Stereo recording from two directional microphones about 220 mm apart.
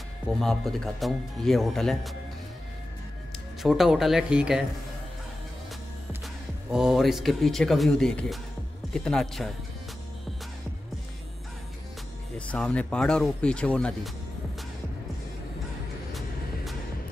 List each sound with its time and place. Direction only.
0.4 s speech: centre (ahead or behind)
3.6 s speech: centre (ahead or behind)
6.2 s speech: 5° right (ahead or behind)
12.4 s speech: 5° left (ahead or behind)
16.1 s vehicle: centre (ahead or behind)